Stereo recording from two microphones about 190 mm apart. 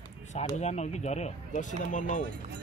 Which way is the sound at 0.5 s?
35° left (ahead or behind).